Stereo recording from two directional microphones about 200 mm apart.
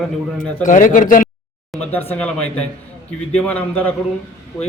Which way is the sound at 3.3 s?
5° left (ahead or behind).